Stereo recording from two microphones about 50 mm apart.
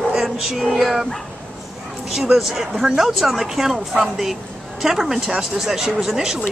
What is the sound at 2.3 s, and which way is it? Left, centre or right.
Speech, centre.